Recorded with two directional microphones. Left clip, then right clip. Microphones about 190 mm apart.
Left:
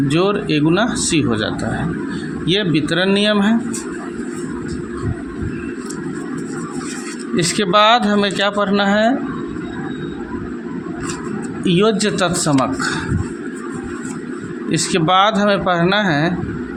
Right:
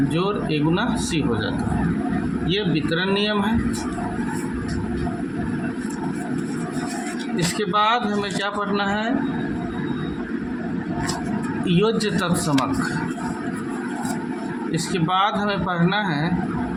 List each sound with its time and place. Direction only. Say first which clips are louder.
0.1 s speech: left 6 dB; 40° left (ahead or behind)
7.3 s speech: left 7 dB; 45° left (ahead or behind)
11.6 s speech: left 6 dB; 40° left (ahead or behind)
14.7 s speech: left 8 dB; 45° left (ahead or behind)